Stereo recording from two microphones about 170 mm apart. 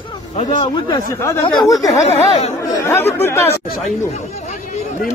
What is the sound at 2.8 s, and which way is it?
Speech, 15° left (ahead or behind).